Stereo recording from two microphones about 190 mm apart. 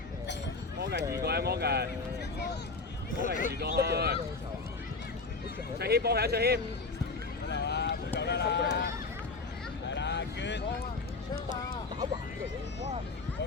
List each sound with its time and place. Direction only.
0.8 s speech: 60° right (ahead or behind)
3.2 s speech: 45° left (ahead or behind)
3.5 s speech: 55° right (ahead or behind)
5.8 s speech: 60° right (ahead or behind)
7.5 s vehicle: 65° left (ahead or behind)
8.2 s speech: 65° left (ahead or behind)
9.9 s a sound: 65° left (ahead or behind)